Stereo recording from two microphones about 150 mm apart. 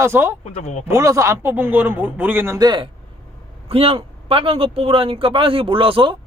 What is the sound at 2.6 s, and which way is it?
A man's voice, 30° right (ahead or behind).